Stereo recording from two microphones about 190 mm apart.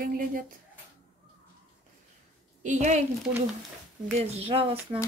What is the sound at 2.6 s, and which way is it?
Speech, 40° right (ahead or behind).